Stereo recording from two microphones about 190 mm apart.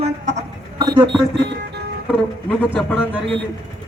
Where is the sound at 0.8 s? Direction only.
20° right (ahead or behind).